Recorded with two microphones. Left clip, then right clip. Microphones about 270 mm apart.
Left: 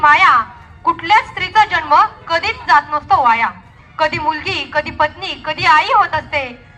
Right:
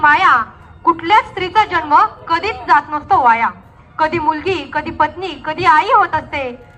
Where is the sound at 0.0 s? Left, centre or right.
Left.